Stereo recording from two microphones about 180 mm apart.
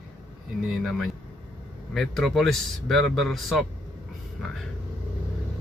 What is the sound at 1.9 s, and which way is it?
Speech, centre (ahead or behind).